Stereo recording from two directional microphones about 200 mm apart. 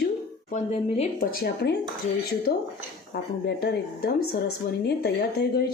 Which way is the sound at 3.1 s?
55° left (ahead or behind).